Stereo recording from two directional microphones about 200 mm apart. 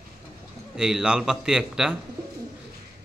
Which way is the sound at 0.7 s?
5° right (ahead or behind).